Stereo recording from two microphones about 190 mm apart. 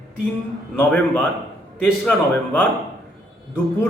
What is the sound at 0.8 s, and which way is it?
A man's voice, 5° left (ahead or behind).